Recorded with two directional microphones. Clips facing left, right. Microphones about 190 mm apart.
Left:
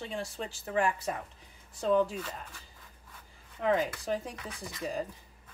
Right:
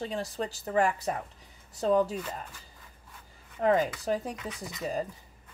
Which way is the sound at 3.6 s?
40° right (ahead or behind).